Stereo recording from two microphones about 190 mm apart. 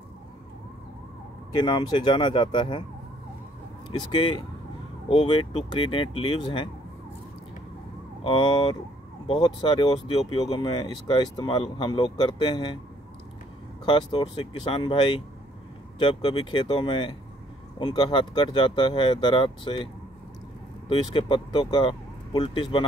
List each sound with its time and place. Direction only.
1.6 s speech: 25° left (ahead or behind)
3.9 s speech: 25° left (ahead or behind)
8.2 s speech: 25° left (ahead or behind)
13.8 s speech: 25° left (ahead or behind)
20.9 s speech: 25° left (ahead or behind)